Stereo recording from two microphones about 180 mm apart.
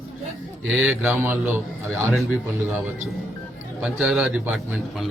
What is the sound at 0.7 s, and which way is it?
Speech, 5° right (ahead or behind).